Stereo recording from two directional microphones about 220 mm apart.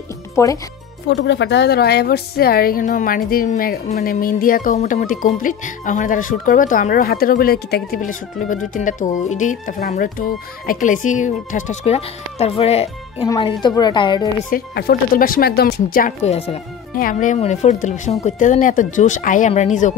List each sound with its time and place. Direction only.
0.4 s speech: 10° left (ahead or behind)
1.0 s a woman's voice: 55° left (ahead or behind); by 14.3 s 20° left (ahead or behind)
14.5 s a woman's voice: 45° left (ahead or behind)
16.3 s a woman's voice: 25° left (ahead or behind)
16.9 s a woman's voice: 40° left (ahead or behind)